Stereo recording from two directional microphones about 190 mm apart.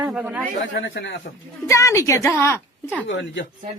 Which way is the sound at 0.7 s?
70° left (ahead or behind).